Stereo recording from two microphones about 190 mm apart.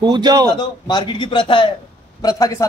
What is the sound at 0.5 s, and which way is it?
A man's voice, 20° left (ahead or behind).